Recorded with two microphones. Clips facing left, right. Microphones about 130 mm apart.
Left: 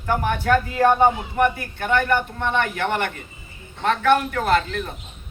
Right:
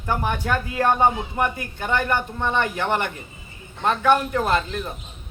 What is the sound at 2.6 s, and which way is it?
A man's voice, 20° right (ahead or behind).